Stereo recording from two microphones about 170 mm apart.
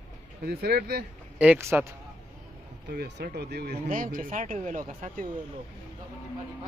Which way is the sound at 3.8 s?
55° right (ahead or behind).